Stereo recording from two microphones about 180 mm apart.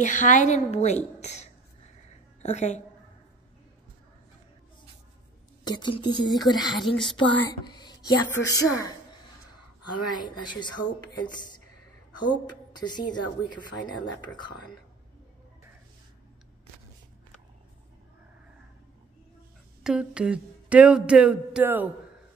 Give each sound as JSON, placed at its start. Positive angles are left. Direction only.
{"t": 0.0, "sound": "a woman's voice", "side_deg": 45}
{"t": 5.6, "sound": "a woman's voice", "side_deg": 25}
{"t": 12.4, "sound": "a woman's voice", "side_deg": 25}
{"t": 19.8, "sound": "a sound", "side_deg": -5}